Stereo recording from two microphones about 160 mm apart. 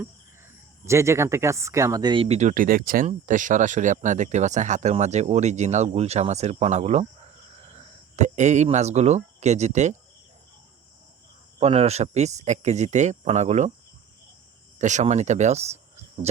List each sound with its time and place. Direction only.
0.9 s speech: 15° right (ahead or behind)
2.2 s speech: 45° right (ahead or behind)
11.6 s speech: 40° right (ahead or behind)
14.8 s speech: 50° right (ahead or behind)